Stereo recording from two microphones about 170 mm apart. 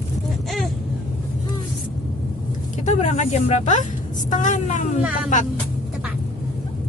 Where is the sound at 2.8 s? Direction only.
45° left (ahead or behind).